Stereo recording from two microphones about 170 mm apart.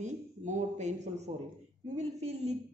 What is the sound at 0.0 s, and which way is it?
A man's voice, 45° right (ahead or behind).